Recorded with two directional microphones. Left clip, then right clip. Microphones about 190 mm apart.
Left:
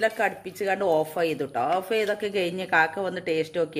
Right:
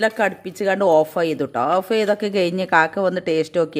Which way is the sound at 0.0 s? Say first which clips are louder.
Right 5 dB; 60° right (ahead or behind).